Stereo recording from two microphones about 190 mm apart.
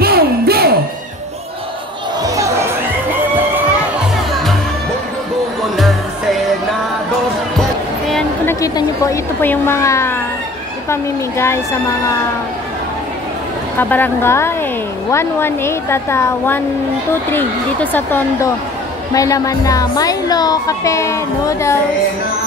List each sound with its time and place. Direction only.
0.0 s a sound: 55° right (ahead or behind)
2.2 s music: 15° right (ahead or behind)
4.3 s music: centre (ahead or behind)
5.8 s music: centre (ahead or behind)
8.5 s a woman's voice: 15° left (ahead or behind)
13.7 s speech: 10° left (ahead or behind)